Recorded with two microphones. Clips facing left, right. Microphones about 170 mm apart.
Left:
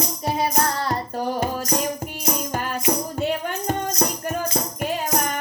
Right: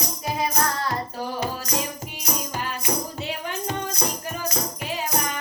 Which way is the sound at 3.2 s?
50° left (ahead or behind).